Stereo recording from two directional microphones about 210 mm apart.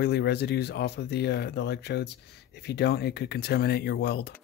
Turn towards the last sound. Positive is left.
turn(degrees=50)  # may be behind; listen again after turning